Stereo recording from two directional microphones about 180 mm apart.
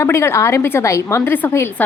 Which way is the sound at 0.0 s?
15° left (ahead or behind).